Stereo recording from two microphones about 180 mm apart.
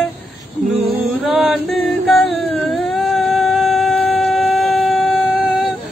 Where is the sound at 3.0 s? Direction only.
Centre (ahead or behind).